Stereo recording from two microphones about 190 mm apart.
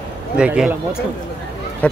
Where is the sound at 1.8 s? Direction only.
5° left (ahead or behind).